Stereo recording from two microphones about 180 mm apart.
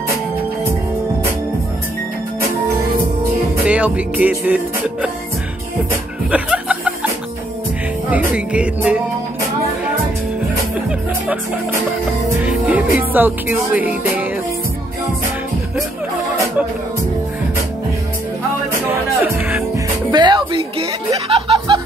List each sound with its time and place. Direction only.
3.6 s music: 5° right (ahead or behind)
6.3 s music: 5° right (ahead or behind)
8.1 s music: 10° right (ahead or behind)
12.4 s speech: 10° right (ahead or behind)
19.3 s music: 10° right (ahead or behind)
20.1 s music: 25° right (ahead or behind)